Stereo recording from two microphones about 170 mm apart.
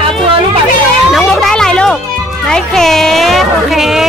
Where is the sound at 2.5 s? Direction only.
5° left (ahead or behind).